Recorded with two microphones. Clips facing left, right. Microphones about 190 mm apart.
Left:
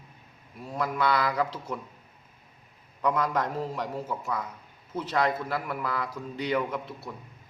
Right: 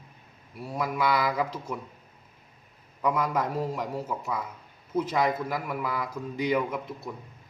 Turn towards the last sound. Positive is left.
turn(degrees=-10)  # may be behind; listen again after turning